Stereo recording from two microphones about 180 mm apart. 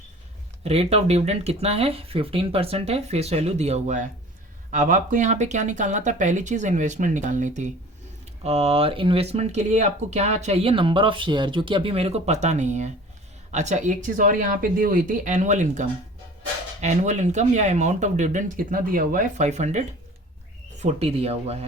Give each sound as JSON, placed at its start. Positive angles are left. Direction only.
{"t": 0.6, "sound": "speech", "side_deg": -35}